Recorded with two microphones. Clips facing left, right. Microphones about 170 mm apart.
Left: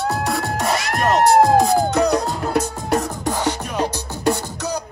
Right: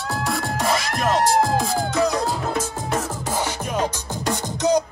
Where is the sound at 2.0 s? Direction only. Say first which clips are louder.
Left 3 dB; 65° left (ahead or behind).